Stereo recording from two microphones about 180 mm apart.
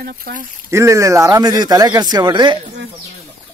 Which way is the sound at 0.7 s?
15° right (ahead or behind).